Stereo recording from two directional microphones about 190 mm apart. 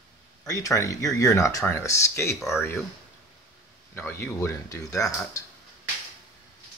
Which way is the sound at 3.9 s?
10° left (ahead or behind).